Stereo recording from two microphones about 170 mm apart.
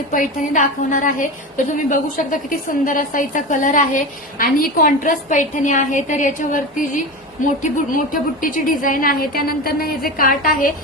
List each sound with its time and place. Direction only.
0.1 s a woman's voice: 50° left (ahead or behind)